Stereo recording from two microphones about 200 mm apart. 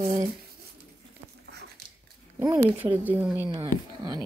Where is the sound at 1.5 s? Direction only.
55° right (ahead or behind).